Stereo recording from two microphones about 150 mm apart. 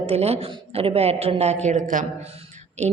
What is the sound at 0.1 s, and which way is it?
A woman's voice, 45° right (ahead or behind).